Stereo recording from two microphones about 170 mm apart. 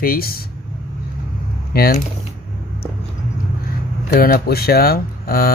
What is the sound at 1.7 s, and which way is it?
Speech, 65° left (ahead or behind).